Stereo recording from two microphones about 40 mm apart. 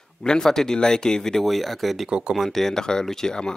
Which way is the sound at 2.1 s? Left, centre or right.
Right.